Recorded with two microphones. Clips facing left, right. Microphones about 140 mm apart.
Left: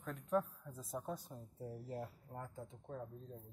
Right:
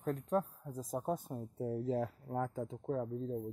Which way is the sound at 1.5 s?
85° right.